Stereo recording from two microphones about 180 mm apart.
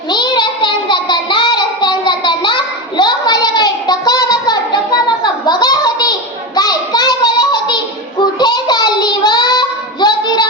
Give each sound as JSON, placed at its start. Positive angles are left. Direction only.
{"t": 0.1, "sound": "child singing", "side_deg": 25}
{"t": 3.0, "sound": "a sound", "side_deg": 20}
{"t": 6.6, "sound": "child singing", "side_deg": 20}